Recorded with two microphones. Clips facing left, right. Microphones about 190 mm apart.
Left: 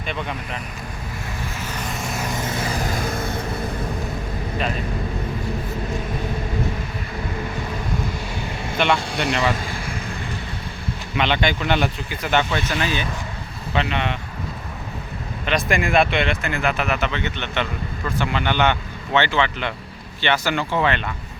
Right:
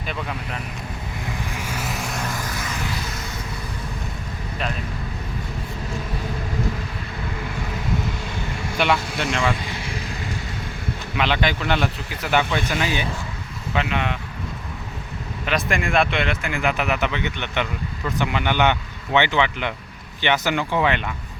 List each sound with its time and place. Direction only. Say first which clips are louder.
0.0 s speech: left 1 dB; 5° right (ahead or behind)
1.5 s vehicle: even; 10° right (ahead or behind)
2.3 s a sound: left 4 dB; 25° left (ahead or behind); by 3.4 s 55° left (ahead or behind)
8.8 s speech: left 1 dB; 5° right (ahead or behind)
11.2 s speech: left 1 dB; centre (ahead or behind)
15.4 s speech: left 2 dB; centre (ahead or behind)